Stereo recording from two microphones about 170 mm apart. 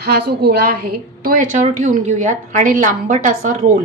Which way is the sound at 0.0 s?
65° right (ahead or behind).